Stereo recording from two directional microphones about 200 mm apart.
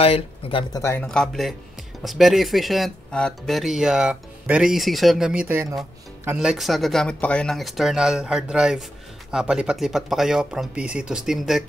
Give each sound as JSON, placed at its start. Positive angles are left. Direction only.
{"t": 0.0, "sound": "speech", "side_deg": 30}
{"t": 0.8, "sound": "speech", "side_deg": 5}